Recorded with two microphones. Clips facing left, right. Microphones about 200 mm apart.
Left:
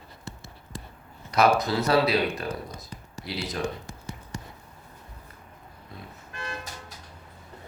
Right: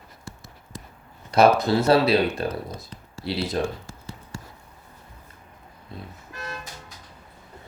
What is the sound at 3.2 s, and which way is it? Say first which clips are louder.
Speech: right 6 dB; 30° right (ahead or behind).